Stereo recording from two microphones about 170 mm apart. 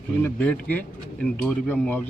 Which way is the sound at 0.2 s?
10° left (ahead or behind).